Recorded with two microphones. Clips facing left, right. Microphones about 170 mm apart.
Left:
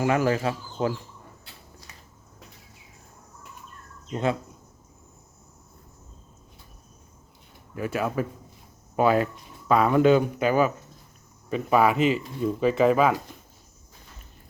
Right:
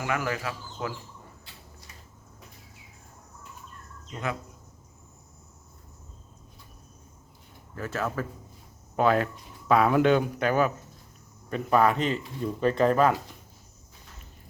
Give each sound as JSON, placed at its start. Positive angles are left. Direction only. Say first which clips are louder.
{"t": 0.0, "sound": "speech", "louder": "left 7 dB", "side_deg": 30}
{"t": 4.1, "sound": "speech", "louder": "left 7 dB", "side_deg": 30}
{"t": 7.8, "sound": "speech", "louder": "left 4 dB", "side_deg": 10}